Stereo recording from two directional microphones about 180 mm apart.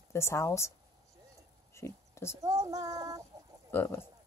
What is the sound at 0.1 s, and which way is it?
Speech, 15° left (ahead or behind).